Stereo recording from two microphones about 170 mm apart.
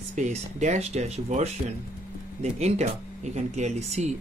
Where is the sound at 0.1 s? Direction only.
45° right (ahead or behind).